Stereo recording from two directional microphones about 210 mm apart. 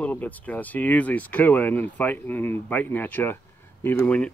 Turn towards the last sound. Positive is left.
turn(degrees=5)  # may be behind; listen again after turning